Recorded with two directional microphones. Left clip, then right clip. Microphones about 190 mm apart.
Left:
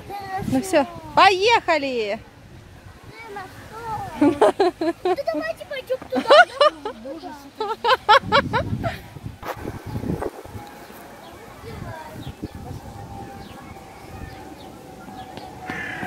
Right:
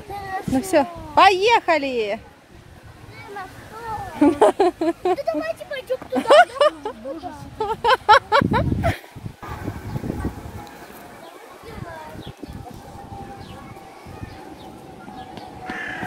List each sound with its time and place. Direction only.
0.1 s a child's voice: 5° right (ahead or behind)
4.1 s speech: 5° right (ahead or behind)
15.6 s a sound: 40° right (ahead or behind)